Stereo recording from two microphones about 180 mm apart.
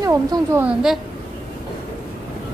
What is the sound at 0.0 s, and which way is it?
Speech, 20° right (ahead or behind).